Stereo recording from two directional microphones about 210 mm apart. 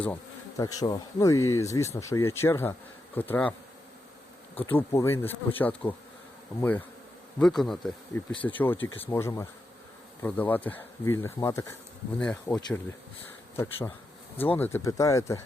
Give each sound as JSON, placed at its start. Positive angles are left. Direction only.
{"t": 0.0, "sound": "bee", "side_deg": 10}
{"t": 0.8, "sound": "speech", "side_deg": 15}
{"t": 4.8, "sound": "speech", "side_deg": 15}
{"t": 12.5, "sound": "speech", "side_deg": 15}